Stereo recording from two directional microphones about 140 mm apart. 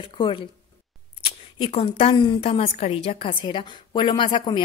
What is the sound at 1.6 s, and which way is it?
A woman's voice, 40° left (ahead or behind).